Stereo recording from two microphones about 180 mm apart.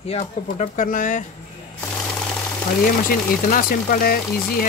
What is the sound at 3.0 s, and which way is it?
Speech, 50° left (ahead or behind).